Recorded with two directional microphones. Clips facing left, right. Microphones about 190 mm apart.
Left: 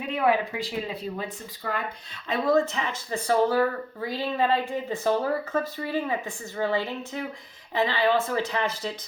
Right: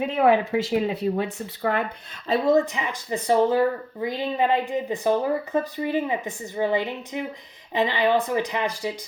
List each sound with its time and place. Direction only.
0.3 s speech: 20° right (ahead or behind)
0.7 s speech: 70° right (ahead or behind)
2.5 s speech: 15° right (ahead or behind)